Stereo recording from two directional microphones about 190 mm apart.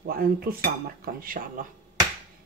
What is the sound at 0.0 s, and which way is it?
Speech, 50° right (ahead or behind).